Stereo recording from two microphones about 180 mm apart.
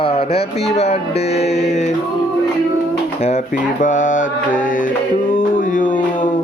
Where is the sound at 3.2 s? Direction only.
40° left (ahead or behind).